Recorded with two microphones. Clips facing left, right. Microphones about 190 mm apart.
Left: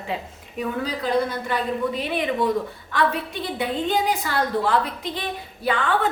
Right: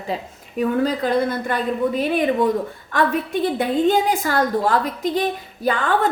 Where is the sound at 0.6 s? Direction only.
50° right (ahead or behind).